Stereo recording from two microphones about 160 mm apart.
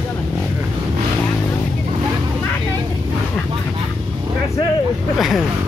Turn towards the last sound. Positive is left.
turn(degrees=0)  # may be behind; listen again after turning